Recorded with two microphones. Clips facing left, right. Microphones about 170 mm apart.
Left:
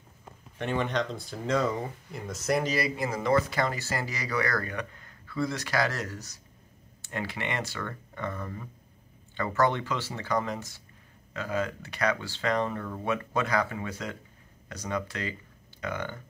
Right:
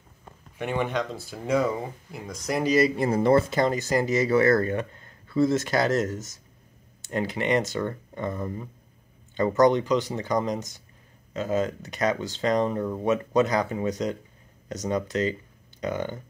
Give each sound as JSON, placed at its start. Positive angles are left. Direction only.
{"t": 0.6, "sound": "speech", "side_deg": -10}
{"t": 2.2, "sound": "speech", "side_deg": 0}
{"t": 2.6, "sound": "speech", "side_deg": -20}